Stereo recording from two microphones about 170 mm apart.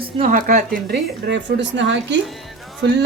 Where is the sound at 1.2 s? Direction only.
90° right.